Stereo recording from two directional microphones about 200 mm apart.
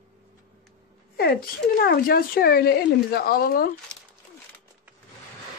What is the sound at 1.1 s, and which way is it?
Speech, 50° left (ahead or behind).